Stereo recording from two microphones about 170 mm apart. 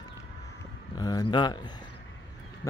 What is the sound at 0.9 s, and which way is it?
Speech, 25° left (ahead or behind).